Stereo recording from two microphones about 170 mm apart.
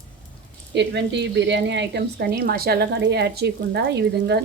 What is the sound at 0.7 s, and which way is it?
Speech, 90° right.